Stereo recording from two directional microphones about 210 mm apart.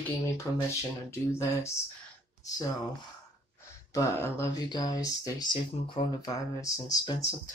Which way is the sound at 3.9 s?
15° left (ahead or behind).